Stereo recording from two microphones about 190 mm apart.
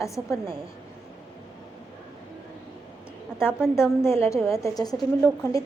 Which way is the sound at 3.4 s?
10° left (ahead or behind).